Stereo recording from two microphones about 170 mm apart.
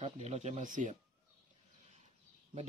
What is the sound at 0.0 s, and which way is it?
Speech, 40° right (ahead or behind).